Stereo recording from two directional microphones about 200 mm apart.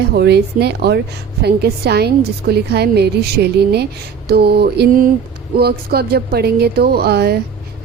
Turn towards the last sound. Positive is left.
turn(degrees=-55)  # may be behind; listen again after turning